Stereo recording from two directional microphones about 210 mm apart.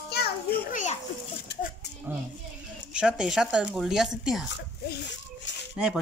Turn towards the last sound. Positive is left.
turn(degrees=-5)  # may be behind; listen again after turning